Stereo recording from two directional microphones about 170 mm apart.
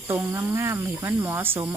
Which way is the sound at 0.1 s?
10° right (ahead or behind).